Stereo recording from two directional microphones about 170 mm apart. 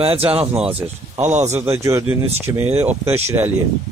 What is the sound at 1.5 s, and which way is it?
Speech, 15° right (ahead or behind).